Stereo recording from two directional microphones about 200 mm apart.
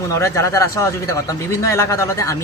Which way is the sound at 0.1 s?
15° left (ahead or behind).